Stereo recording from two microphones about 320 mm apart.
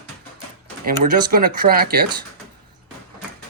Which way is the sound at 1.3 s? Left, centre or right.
Right.